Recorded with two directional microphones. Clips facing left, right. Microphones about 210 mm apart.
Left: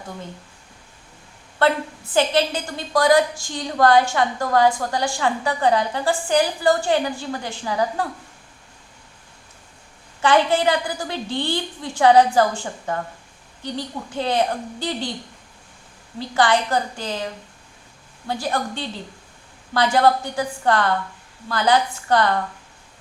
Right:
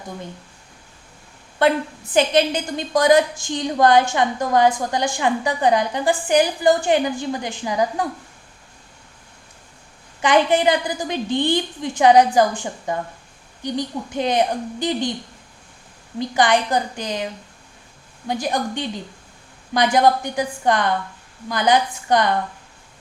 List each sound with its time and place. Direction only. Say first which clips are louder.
1.6 s a woman's voice: right 2 dB; 15° right (ahead or behind)
10.2 s a woman's voice: right 1 dB; 15° right (ahead or behind)
16.1 s a woman's voice: right 1 dB; 15° right (ahead or behind)
18.3 s a woman's voice: right 2 dB; 15° right (ahead or behind)